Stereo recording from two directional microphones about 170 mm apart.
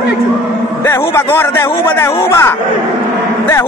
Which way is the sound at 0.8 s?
15° left (ahead or behind).